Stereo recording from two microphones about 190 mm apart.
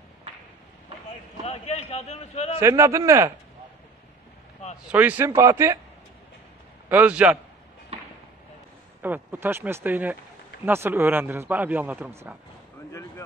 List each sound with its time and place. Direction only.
1.4 s a man's voice: 35° left (ahead or behind)
2.6 s a man's voice: 15° right (ahead or behind)
4.8 s a man's voice: 5° right (ahead or behind)
6.9 s a man's voice: 5° right (ahead or behind)
9.0 s a man's voice: 10° right (ahead or behind)